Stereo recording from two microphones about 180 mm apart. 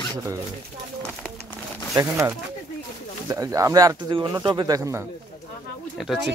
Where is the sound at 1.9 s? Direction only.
15° right (ahead or behind).